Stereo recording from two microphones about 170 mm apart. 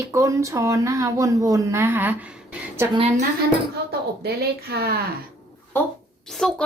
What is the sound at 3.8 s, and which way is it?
Speech, 75° right (ahead or behind).